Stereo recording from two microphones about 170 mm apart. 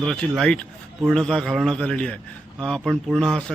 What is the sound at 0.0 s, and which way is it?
A man's voice, 5° left (ahead or behind).